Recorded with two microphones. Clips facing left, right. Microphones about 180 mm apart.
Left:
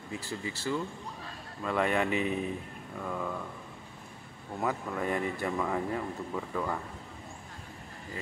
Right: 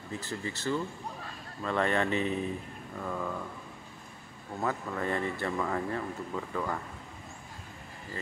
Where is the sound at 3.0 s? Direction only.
Centre (ahead or behind).